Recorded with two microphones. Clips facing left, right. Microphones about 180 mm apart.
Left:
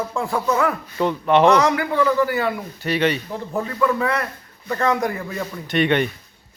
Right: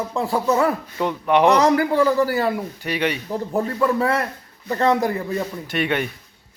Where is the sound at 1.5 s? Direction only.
35° right (ahead or behind).